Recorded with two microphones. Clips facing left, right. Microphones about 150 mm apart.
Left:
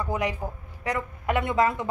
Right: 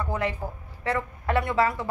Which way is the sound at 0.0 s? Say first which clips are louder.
Left 1 dB; 15° left (ahead or behind).